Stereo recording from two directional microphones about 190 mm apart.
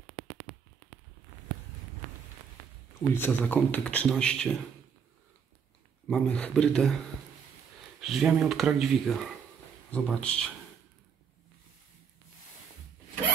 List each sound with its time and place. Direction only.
3.1 s speech: 10° left (ahead or behind)
6.0 s speech: 5° left (ahead or behind)
8.0 s speech: centre (ahead or behind)